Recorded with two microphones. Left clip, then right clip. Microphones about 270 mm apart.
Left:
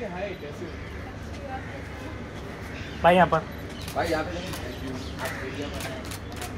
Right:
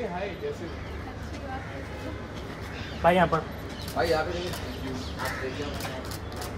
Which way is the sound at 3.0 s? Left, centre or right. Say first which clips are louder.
Left 3 dB; left.